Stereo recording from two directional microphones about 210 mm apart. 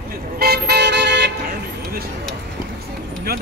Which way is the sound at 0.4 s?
50° right (ahead or behind).